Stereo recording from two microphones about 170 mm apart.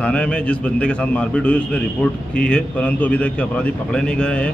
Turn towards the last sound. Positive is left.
turn(degrees=5)  # may be behind; listen again after turning